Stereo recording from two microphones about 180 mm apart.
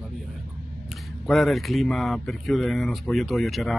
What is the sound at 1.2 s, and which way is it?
Speech, centre (ahead or behind).